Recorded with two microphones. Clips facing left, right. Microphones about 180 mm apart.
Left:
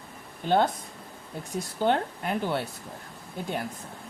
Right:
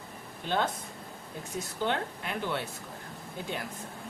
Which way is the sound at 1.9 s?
40° left (ahead or behind).